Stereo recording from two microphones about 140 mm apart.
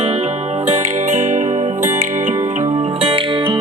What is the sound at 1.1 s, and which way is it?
Music, 55° right (ahead or behind).